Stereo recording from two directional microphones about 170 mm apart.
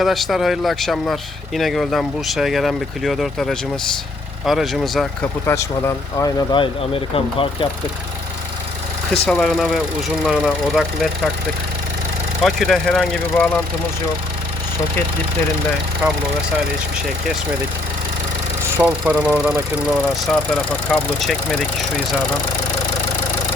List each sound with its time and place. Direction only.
0.0 s speech: centre (ahead or behind)
5.5 s speech: 15° left (ahead or behind); by 7.7 s 35° left (ahead or behind)
9.2 s speech: 5° left (ahead or behind)
12.4 s speech: centre (ahead or behind)
18.8 s speech: 10° right (ahead or behind)